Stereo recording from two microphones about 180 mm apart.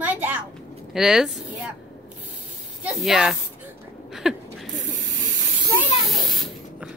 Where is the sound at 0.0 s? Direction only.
10° right (ahead or behind).